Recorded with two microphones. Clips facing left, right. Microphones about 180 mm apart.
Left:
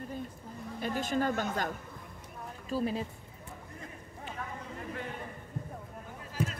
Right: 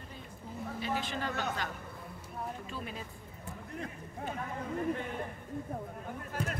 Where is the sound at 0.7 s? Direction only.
45° left (ahead or behind).